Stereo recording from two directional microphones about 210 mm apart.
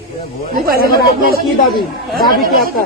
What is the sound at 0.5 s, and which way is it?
Speech, 45° right (ahead or behind).